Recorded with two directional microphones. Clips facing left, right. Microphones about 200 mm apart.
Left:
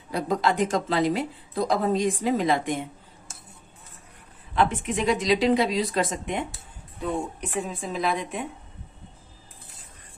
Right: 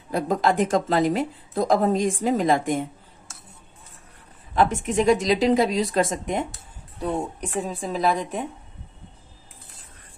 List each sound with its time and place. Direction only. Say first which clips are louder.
0.1 s a woman's voice: right 3 dB; 50° right (ahead or behind)
4.6 s a woman's voice: right 3 dB; 45° right (ahead or behind)